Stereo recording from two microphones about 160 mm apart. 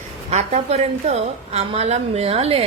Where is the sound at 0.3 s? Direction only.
45° right (ahead or behind).